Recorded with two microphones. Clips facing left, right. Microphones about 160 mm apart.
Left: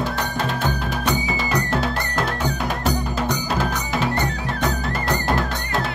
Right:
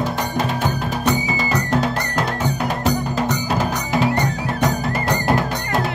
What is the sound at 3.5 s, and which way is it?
Music, centre (ahead or behind).